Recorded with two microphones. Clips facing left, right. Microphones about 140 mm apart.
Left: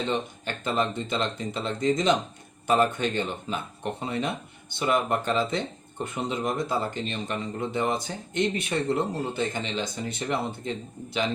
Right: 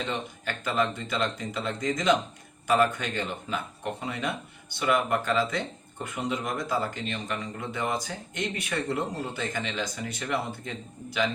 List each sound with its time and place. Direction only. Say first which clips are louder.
0.4 s speech: right 2 dB; 25° left (ahead or behind)